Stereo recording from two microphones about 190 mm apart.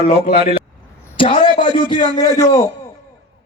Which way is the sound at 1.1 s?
30° left (ahead or behind).